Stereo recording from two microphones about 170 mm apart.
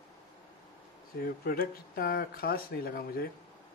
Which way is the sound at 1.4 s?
60° left (ahead or behind).